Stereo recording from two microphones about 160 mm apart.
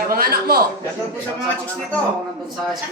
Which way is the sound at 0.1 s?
70° right (ahead or behind).